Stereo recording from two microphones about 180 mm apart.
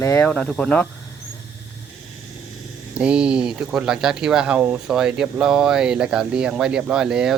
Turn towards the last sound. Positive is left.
turn(degrees=-5)  # may be behind; listen again after turning